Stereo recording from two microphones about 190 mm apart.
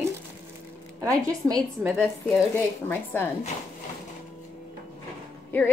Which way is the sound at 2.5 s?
10° left (ahead or behind).